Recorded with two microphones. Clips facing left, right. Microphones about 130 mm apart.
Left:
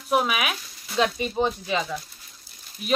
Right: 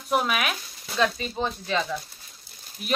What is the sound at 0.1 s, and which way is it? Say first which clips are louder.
Speech: left 1 dB; 5° left (ahead or behind).